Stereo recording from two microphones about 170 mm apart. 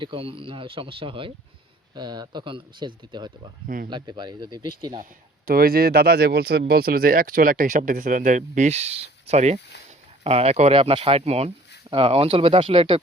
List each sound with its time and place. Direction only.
0.0 s speech: 30° right (ahead or behind)
5.5 s speech: 60° right (ahead or behind); by 13.0 s 30° right (ahead or behind)